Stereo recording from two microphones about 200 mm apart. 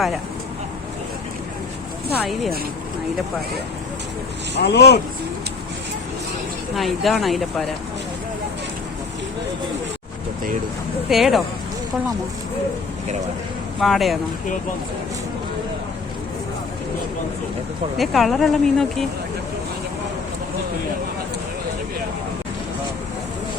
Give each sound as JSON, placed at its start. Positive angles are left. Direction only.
{"t": 4.5, "sound": "speech", "side_deg": 55}
{"t": 6.7, "sound": "speech", "side_deg": 0}
{"t": 11.1, "sound": "speech", "side_deg": 0}
{"t": 13.7, "sound": "speech", "side_deg": 0}
{"t": 17.9, "sound": "speech", "side_deg": 0}